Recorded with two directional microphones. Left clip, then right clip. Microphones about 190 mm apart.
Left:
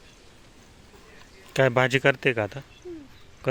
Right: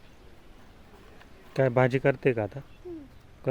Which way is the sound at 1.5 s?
Centre (ahead or behind).